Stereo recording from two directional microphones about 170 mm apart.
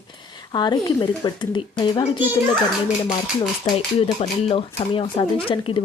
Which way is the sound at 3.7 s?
35° left (ahead or behind).